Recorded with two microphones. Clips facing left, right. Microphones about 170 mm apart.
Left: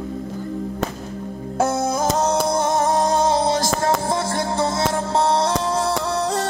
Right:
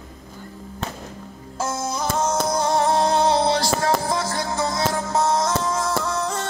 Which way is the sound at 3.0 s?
45° left (ahead or behind).